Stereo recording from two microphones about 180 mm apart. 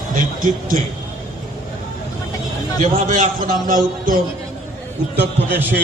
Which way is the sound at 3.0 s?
45° right (ahead or behind).